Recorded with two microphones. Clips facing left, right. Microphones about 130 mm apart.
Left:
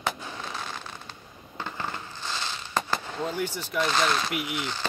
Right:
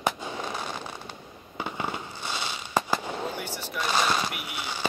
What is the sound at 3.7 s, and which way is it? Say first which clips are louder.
Speech: left 1 dB; 10° right (ahead or behind).